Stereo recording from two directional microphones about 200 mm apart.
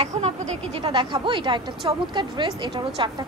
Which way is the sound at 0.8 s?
25° right (ahead or behind).